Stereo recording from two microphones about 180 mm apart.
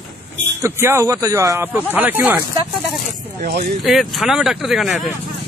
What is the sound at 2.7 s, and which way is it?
Speech, centre (ahead or behind).